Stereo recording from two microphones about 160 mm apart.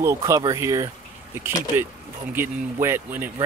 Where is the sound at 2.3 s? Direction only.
15° right (ahead or behind).